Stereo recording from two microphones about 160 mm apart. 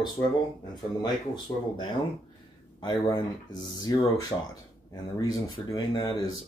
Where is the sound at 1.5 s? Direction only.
20° left (ahead or behind).